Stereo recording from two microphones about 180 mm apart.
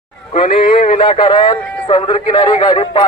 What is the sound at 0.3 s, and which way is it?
A man's voice, 35° left (ahead or behind).